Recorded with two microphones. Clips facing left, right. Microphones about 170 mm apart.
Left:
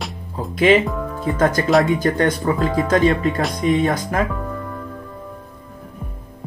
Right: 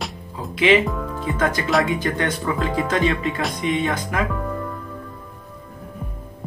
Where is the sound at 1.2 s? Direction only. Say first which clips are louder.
Left 5 dB; 45° left (ahead or behind).